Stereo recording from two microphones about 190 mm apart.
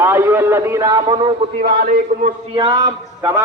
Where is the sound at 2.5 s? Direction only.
25° right (ahead or behind).